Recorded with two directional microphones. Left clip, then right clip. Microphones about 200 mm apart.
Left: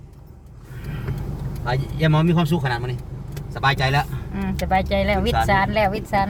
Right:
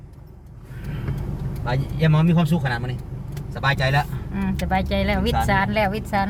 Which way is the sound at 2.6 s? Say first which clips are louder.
Left 1 dB; 55° left (ahead or behind).